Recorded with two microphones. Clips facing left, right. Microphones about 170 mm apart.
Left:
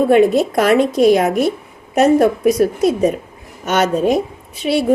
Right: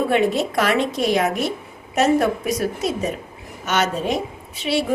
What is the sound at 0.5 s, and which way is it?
A woman's voice, 45° left (ahead or behind).